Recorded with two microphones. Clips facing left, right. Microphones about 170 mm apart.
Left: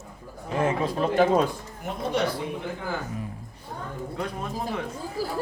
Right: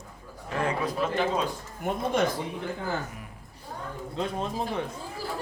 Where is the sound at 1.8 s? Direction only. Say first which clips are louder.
Right 1 dB; 50° right (ahead or behind).